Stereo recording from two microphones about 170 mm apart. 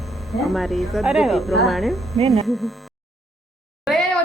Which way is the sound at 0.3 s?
Centre (ahead or behind).